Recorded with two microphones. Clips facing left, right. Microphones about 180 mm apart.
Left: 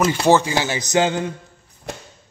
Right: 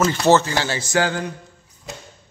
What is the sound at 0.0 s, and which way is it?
A man's voice, 10° left (ahead or behind).